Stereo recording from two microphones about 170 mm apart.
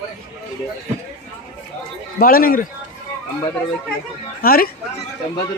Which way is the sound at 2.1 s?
60° left (ahead or behind).